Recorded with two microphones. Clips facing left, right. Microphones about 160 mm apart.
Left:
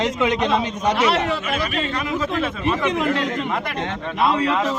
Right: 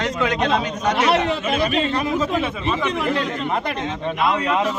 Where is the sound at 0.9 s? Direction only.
20° right (ahead or behind).